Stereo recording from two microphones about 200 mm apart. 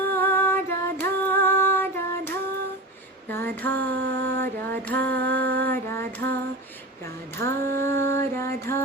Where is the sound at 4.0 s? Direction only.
70° right (ahead or behind).